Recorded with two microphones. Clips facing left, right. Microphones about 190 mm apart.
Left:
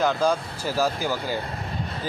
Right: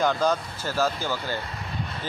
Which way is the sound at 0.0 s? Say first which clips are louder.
Left 1 dB; 5° left (ahead or behind).